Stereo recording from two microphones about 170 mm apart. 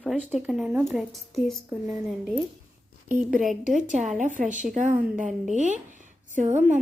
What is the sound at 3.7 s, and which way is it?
A woman's voice, 45° right (ahead or behind).